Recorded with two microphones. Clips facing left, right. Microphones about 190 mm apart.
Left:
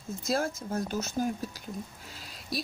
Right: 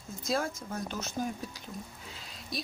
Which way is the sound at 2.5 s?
5° left (ahead or behind).